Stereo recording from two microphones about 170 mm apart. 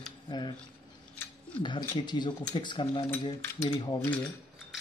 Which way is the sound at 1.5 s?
25° left (ahead or behind).